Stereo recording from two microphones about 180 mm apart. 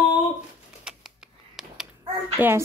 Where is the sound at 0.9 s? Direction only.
5° right (ahead or behind).